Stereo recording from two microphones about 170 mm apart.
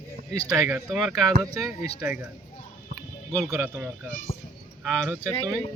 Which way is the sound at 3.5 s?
15° right (ahead or behind).